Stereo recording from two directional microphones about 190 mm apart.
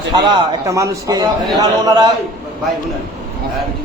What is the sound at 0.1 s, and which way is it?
A man's voice, 20° right (ahead or behind).